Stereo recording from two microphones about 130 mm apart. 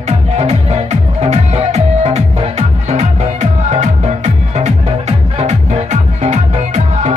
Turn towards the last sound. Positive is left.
turn(degrees=-60)  # may be behind; listen again after turning